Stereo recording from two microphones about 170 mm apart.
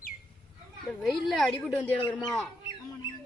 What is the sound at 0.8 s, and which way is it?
A child's voice, centre (ahead or behind).